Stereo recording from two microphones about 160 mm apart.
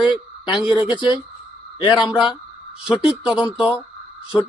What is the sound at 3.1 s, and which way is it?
Speech, 5° right (ahead or behind).